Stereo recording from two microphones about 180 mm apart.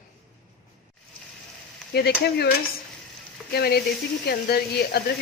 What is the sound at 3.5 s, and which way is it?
A woman's voice, 60° left (ahead or behind).